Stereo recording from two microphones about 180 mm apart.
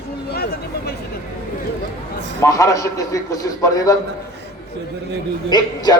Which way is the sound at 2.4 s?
15° left (ahead or behind).